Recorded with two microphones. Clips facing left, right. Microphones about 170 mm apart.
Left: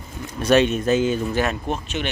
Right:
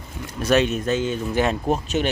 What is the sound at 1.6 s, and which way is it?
Speech, 40° right (ahead or behind).